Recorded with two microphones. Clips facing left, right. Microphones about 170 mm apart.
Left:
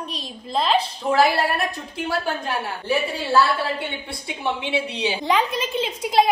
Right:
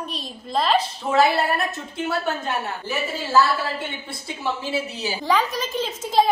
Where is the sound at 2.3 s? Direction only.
25° right (ahead or behind).